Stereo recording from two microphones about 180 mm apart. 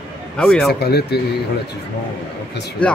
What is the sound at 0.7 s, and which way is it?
Speech, 65° left (ahead or behind).